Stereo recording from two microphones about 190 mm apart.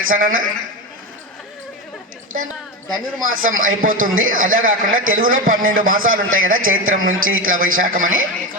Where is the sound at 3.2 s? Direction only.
90° right.